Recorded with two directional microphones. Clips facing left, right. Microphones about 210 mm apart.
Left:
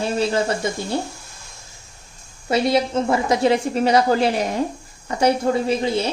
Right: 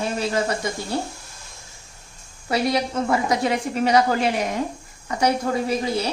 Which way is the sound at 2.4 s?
25° left (ahead or behind).